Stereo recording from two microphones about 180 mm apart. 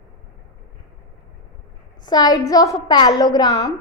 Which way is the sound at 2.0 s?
20° left (ahead or behind).